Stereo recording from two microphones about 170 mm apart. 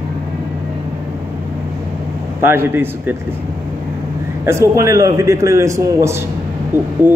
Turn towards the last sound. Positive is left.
turn(degrees=-15)  # may be behind; listen again after turning